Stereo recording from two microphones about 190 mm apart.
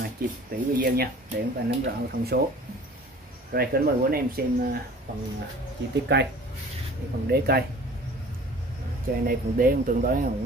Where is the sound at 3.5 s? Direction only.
55° right (ahead or behind).